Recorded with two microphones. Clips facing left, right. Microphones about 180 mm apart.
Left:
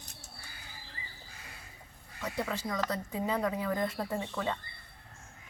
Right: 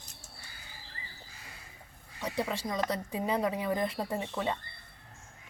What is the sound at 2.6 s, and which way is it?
Speech, 15° right (ahead or behind).